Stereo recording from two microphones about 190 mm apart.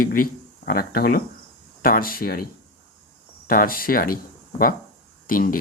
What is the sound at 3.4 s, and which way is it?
Speech, 50° left (ahead or behind).